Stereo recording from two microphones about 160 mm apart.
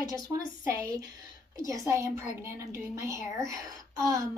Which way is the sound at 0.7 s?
20° right (ahead or behind).